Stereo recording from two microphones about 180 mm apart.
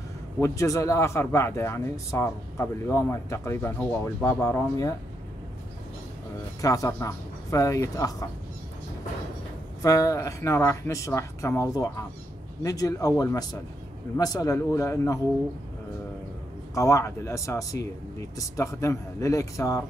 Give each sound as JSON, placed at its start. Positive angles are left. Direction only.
{"t": 0.4, "sound": "a man's voice", "side_deg": 15}
{"t": 6.6, "sound": "a man's voice", "side_deg": 20}
{"t": 9.8, "sound": "a man's voice", "side_deg": 20}
{"t": 16.7, "sound": "a man's voice", "side_deg": 15}